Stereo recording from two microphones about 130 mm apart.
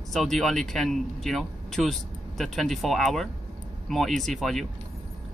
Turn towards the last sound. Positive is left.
turn(degrees=0)  # may be behind; listen again after turning